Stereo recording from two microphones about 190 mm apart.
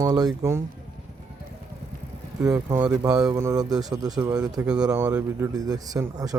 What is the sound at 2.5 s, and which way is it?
Speech, 15° right (ahead or behind).